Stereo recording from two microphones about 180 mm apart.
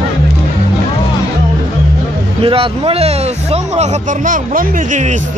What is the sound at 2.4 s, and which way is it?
Speech, 30° right (ahead or behind).